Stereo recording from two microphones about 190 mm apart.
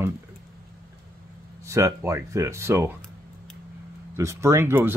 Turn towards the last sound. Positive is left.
turn(degrees=-10)  # may be behind; listen again after turning